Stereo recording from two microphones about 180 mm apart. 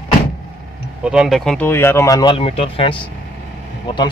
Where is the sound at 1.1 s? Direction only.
Centre (ahead or behind); by 3.0 s 30° left (ahead or behind).